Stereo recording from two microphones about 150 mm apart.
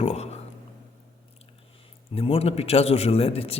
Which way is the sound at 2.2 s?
40° left (ahead or behind).